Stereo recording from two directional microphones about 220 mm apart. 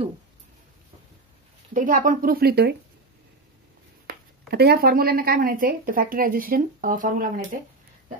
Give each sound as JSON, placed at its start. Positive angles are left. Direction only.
{"t": 1.7, "sound": "speech", "side_deg": -35}
{"t": 4.1, "sound": "speech", "side_deg": -45}